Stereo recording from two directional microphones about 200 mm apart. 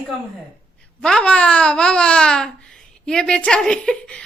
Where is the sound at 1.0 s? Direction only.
5° left (ahead or behind).